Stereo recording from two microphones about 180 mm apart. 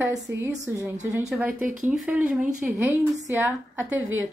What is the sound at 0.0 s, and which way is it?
A woman's voice, 15° right (ahead or behind).